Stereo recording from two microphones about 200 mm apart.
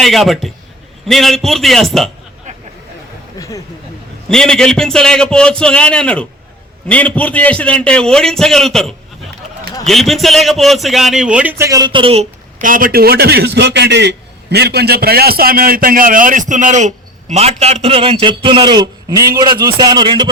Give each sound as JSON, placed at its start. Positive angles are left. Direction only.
{"t": 0.0, "sound": "a man's voice", "side_deg": 0}
{"t": 3.3, "sound": "a sound", "side_deg": 15}
{"t": 4.3, "sound": "a man's voice", "side_deg": 5}